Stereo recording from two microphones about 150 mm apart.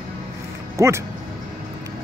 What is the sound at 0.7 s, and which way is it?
Speech, 20° right (ahead or behind).